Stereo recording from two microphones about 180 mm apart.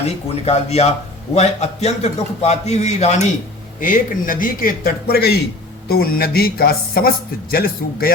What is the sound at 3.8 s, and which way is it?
A man's voice, 50° left (ahead or behind).